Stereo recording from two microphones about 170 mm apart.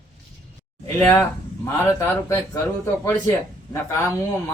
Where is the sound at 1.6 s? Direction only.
15° left (ahead or behind).